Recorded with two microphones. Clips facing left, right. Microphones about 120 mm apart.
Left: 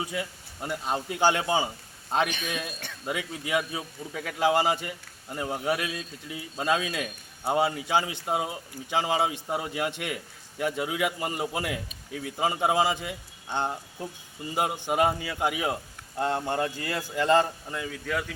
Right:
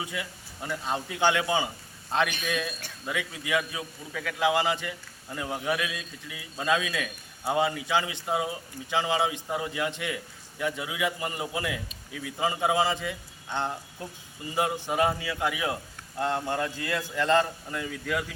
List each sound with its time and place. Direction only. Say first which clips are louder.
0.0 s a man's voice: left 3 dB; 30° left (ahead or behind)
0.6 s speech: left 1 dB; 15° left (ahead or behind)
1.1 s a man's voice: left 1 dB; 30° left (ahead or behind)
2.0 s a man's voice: even; 20° left (ahead or behind)
3.1 s a man's voice: left 1 dB; 30° left (ahead or behind)
18.0 s speech: even; centre (ahead or behind)